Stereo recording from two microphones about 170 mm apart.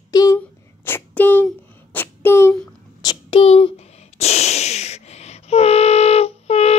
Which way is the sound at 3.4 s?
35° left (ahead or behind).